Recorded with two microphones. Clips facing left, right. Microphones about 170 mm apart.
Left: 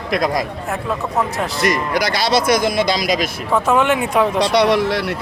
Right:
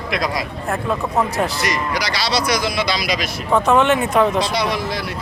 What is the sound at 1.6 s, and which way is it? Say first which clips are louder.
Speech: left 4 dB; 50° left (ahead or behind).